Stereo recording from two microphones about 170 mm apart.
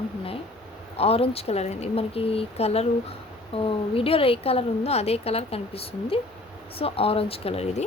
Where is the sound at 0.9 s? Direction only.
35° left (ahead or behind).